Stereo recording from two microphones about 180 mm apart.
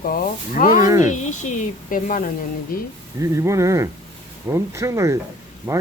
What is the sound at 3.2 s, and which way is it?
Speech, 15° right (ahead or behind).